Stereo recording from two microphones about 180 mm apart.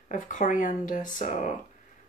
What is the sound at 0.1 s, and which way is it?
Speech, 45° left (ahead or behind).